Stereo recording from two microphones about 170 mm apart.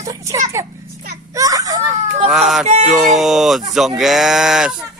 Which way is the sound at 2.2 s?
Centre (ahead or behind).